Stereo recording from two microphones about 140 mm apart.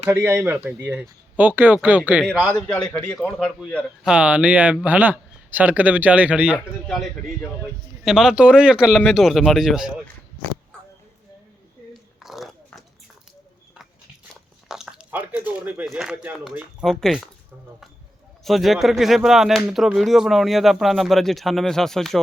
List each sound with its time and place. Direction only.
0.0 s speech: 15° right (ahead or behind)
2.6 s speech: 10° left (ahead or behind)
4.0 s speech: 5° right (ahead or behind)
12.2 s dog: centre (ahead or behind)
14.7 s a sound: 5° right (ahead or behind)
15.9 s speech: 5° right (ahead or behind)
16.8 s speech: 5° left (ahead or behind)
18.4 s speech: centre (ahead or behind)